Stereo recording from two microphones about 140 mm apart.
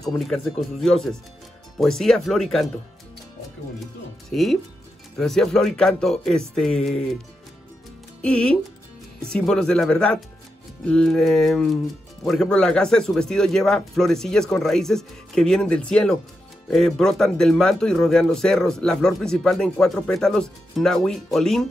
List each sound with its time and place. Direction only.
0.0 s speech: centre (ahead or behind)
4.3 s speech: centre (ahead or behind)
8.2 s speech: 5° left (ahead or behind)